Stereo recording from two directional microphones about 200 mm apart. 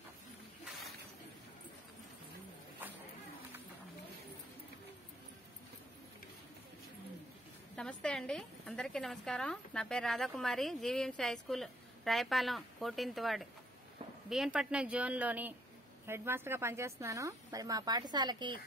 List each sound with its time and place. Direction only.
7.7 s a woman's voice: 5° left (ahead or behind); by 18.6 s 20° right (ahead or behind)